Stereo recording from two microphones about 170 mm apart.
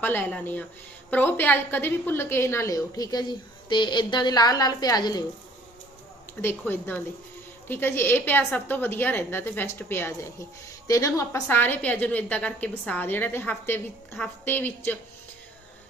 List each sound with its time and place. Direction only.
0.0 s a woman's voice: 10° left (ahead or behind)
6.4 s a woman's voice: 10° left (ahead or behind)